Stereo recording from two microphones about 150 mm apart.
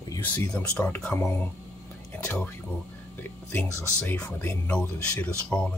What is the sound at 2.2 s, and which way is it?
Music, 15° left (ahead or behind).